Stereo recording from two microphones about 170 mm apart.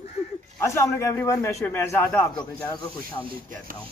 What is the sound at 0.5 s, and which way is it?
A man's voice, 15° left (ahead or behind).